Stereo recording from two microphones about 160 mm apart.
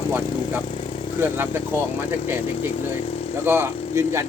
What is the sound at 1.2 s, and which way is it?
Speech, 15° right (ahead or behind).